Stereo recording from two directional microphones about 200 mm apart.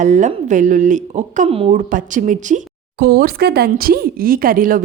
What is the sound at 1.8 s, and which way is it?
A woman's voice, 40° right (ahead or behind).